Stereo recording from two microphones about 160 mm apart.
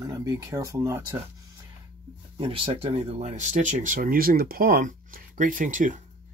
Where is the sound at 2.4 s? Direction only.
35° right (ahead or behind).